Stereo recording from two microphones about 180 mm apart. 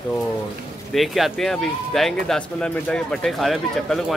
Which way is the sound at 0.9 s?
Centre (ahead or behind).